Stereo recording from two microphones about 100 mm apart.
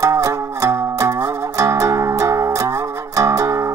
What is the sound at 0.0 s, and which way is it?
Music, 30° right (ahead or behind).